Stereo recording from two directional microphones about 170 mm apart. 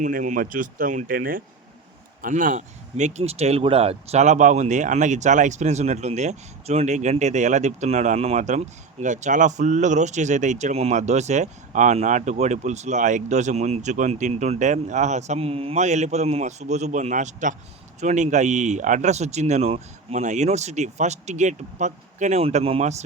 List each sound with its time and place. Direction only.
0.0 s speech: 50° right (ahead or behind)